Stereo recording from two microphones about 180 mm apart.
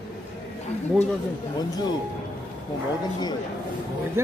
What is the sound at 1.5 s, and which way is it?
Speech, 20° left (ahead or behind).